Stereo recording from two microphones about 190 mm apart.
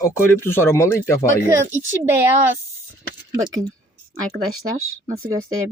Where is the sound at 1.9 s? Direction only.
10° right (ahead or behind).